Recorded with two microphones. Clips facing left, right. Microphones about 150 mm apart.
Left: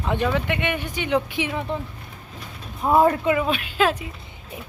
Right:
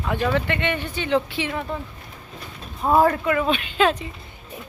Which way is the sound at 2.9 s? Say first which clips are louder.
Even; 20° left (ahead or behind).